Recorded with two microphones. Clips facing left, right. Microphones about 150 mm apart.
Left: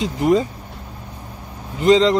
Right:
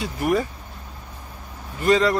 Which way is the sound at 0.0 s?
20° left (ahead or behind).